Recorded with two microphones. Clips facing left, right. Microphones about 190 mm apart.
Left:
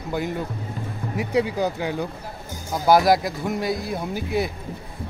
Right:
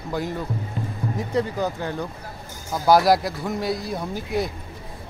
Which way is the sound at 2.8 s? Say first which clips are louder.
Even; centre (ahead or behind).